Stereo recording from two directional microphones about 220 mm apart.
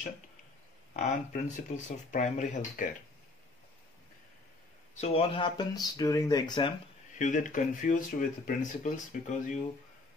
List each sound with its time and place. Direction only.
0.9 s speech: 35° left (ahead or behind)
5.0 s speech: 25° left (ahead or behind)
7.2 s speech: 35° left (ahead or behind)